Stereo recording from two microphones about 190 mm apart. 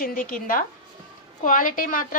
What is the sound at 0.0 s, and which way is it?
A woman's voice, 50° left (ahead or behind).